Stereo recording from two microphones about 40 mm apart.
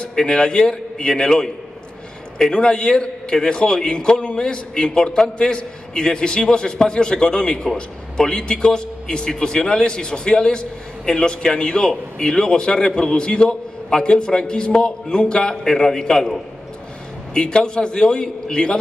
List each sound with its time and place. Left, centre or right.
0.0 s a man's voice: left
15.6 s a man's voice: centre